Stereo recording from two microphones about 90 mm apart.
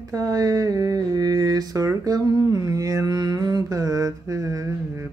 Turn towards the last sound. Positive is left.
turn(degrees=-35)  # may be behind; listen again after turning